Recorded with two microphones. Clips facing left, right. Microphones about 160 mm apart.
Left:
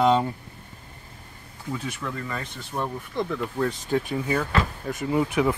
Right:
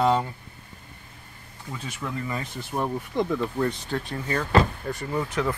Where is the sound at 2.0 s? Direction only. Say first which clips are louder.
Right 1 dB; 15° right (ahead or behind).